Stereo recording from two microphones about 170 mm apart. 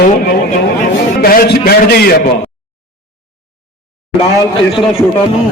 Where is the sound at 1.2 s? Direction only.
60° left (ahead or behind).